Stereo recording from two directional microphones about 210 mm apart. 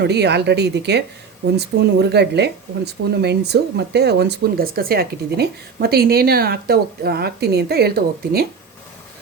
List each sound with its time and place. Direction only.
0.0 s speech: 50° right (ahead or behind)